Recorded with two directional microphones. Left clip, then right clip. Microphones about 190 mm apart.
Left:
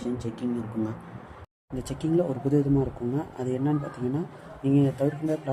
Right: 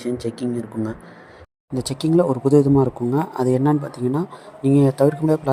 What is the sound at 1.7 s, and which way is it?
Speech, 35° right (ahead or behind).